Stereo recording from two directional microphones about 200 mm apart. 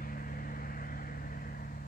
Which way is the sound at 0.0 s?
45° left (ahead or behind).